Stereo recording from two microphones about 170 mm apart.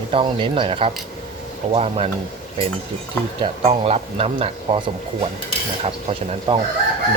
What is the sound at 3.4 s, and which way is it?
Speech, 35° right (ahead or behind).